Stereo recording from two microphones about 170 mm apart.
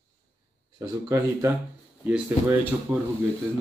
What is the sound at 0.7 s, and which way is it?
Speech, 15° right (ahead or behind).